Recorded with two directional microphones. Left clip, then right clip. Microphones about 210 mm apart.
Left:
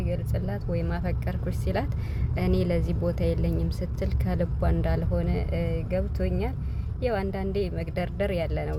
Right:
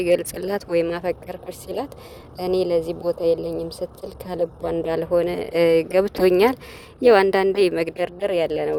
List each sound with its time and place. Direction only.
0.0 s speech: 45° right (ahead or behind)